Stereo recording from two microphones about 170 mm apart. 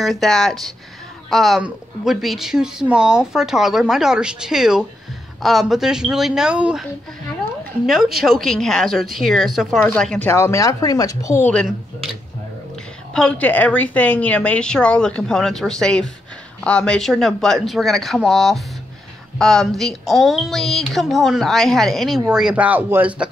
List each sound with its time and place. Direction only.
0.0 s a woman's voice: centre (ahead or behind)
13.1 s a woman's voice: 5° left (ahead or behind); by 23.2 s 10° right (ahead or behind)